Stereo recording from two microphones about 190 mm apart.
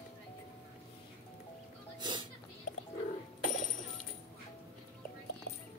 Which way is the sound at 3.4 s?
45° left (ahead or behind).